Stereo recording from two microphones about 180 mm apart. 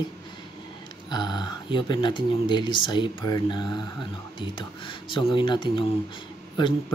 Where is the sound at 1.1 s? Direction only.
25° left (ahead or behind).